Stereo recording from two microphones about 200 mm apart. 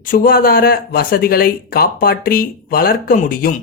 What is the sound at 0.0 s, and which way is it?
Speech, 45° left (ahead or behind).